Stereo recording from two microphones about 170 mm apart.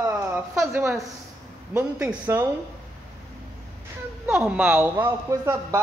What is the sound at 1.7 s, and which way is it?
Speech, 15° right (ahead or behind).